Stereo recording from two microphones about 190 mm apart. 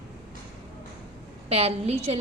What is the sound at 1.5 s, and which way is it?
Speech, 30° right (ahead or behind).